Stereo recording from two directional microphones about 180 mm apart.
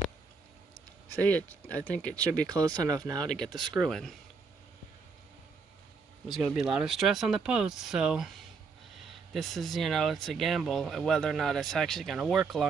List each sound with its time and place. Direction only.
1.2 s speech: 10° left (ahead or behind)
2.8 s speech: 20° right (ahead or behind)
3.3 s speech: centre (ahead or behind)
6.3 s speech: centre (ahead or behind)
9.3 s speech: centre (ahead or behind)